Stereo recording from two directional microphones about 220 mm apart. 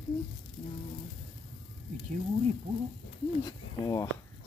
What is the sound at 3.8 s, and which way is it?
Speech, 15° left (ahead or behind).